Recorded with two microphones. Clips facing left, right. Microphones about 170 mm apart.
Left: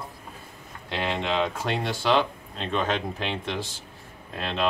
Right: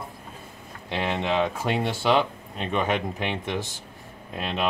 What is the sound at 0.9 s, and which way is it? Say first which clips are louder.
Speech: right 2 dB; 5° right (ahead or behind).